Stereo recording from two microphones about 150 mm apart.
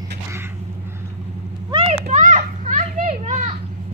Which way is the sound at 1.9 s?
50° right (ahead or behind).